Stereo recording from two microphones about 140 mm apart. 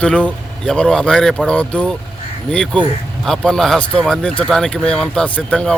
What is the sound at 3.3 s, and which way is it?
Speech, 5° left (ahead or behind).